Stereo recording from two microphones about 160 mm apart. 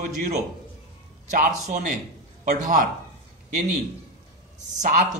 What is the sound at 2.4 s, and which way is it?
Speech, 55° right (ahead or behind).